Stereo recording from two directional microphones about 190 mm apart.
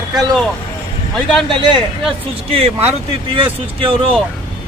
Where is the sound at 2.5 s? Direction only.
30° right (ahead or behind).